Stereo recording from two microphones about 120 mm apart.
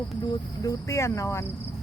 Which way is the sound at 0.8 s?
25° left (ahead or behind).